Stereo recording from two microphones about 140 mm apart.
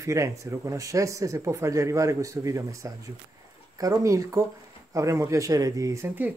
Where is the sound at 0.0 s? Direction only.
20° right (ahead or behind).